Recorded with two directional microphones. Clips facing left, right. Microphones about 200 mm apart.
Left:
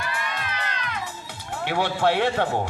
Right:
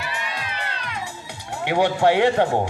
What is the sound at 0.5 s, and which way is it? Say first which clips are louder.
Music: even; 30° right (ahead or behind).